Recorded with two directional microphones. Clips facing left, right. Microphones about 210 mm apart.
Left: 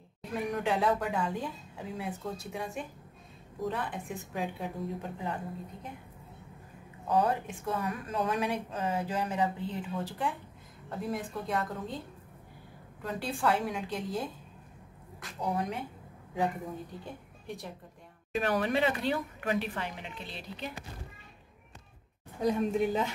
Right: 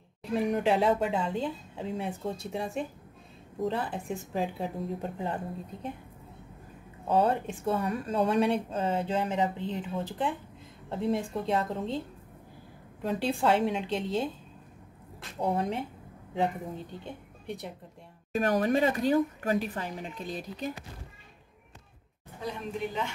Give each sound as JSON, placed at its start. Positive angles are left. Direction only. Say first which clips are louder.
{"t": 0.4, "sound": "speech", "louder": "right 4 dB", "side_deg": -25}
{"t": 7.1, "sound": "speech", "louder": "right 3 dB", "side_deg": -25}
{"t": 13.1, "sound": "speech", "louder": "right 4 dB", "side_deg": -25}
{"t": 15.4, "sound": "speech", "louder": "right 4 dB", "side_deg": -25}
{"t": 18.3, "sound": "speech", "louder": "right 3 dB", "side_deg": -45}
{"t": 22.4, "sound": "a woman's voice", "louder": "left 7 dB", "side_deg": 40}